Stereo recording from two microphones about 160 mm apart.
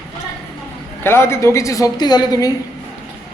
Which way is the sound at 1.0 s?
15° left (ahead or behind).